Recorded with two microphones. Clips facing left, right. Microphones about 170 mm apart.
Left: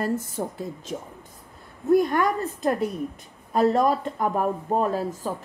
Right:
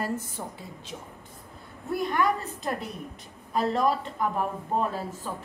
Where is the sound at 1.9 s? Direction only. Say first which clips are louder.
Left 6 dB; 45° left (ahead or behind).